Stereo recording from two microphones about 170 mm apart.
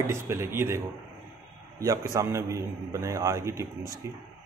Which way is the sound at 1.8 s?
20° right (ahead or behind).